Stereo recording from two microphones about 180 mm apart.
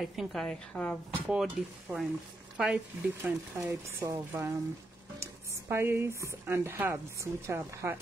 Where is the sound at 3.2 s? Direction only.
15° right (ahead or behind).